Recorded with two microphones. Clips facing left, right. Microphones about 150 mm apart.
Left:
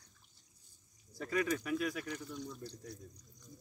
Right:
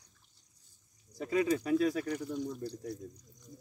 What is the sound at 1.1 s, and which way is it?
Speech, 20° right (ahead or behind).